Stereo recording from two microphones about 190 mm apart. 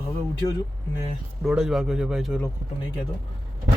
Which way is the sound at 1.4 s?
5° right (ahead or behind).